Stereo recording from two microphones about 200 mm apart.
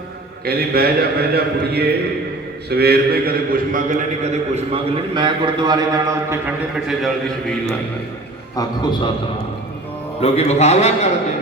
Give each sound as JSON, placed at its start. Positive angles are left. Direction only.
{"t": 0.4, "sound": "a man's voice", "side_deg": -50}
{"t": 4.2, "sound": "a man's voice", "side_deg": -30}
{"t": 6.8, "sound": "a man's voice", "side_deg": 0}
{"t": 8.5, "sound": "a man's voice", "side_deg": 20}
{"t": 10.2, "sound": "a man's voice", "side_deg": 30}